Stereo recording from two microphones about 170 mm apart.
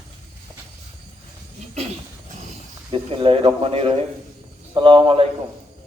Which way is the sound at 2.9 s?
30° right (ahead or behind).